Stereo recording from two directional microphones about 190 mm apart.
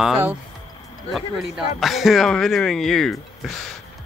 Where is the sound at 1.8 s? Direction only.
Centre (ahead or behind).